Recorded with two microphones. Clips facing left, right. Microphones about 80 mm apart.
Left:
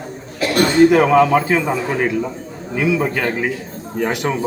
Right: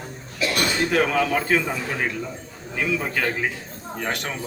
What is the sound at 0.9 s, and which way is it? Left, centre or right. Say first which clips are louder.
Speech: left 9 dB; centre.